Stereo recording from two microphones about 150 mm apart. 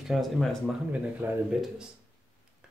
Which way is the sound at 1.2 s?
15° right (ahead or behind).